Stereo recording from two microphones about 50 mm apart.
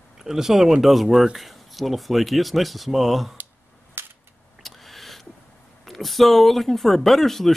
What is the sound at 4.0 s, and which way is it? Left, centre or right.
Cap gun, right.